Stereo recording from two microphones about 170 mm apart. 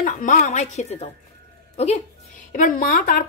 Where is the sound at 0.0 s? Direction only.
50° left (ahead or behind).